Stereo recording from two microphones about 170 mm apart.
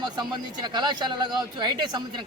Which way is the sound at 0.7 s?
25° right (ahead or behind).